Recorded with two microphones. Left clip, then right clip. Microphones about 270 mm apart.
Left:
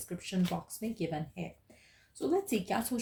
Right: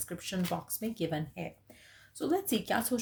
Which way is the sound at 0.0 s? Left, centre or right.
Right.